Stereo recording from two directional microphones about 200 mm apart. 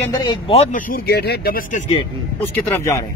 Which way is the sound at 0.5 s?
30° left (ahead or behind).